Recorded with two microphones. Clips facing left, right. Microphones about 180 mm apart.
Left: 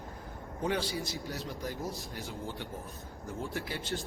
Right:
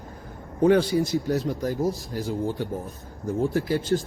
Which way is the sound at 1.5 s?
40° right (ahead or behind).